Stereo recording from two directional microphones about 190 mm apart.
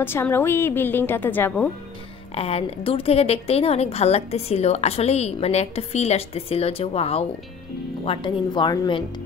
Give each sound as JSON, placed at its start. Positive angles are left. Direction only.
{"t": 0.0, "sound": "a woman's voice", "side_deg": 10}
{"t": 2.3, "sound": "a woman's voice", "side_deg": 30}